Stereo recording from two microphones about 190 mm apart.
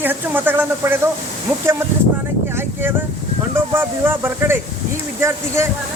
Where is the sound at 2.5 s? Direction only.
10° right (ahead or behind).